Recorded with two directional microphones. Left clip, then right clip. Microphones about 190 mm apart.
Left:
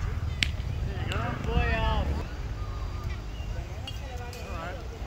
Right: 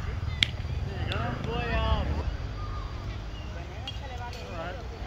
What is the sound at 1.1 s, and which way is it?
Vehicle, 50° right (ahead or behind).